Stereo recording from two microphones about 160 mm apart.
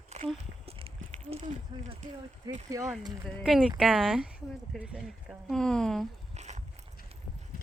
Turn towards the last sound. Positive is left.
turn(degrees=-45)  # may be behind; listen again after turning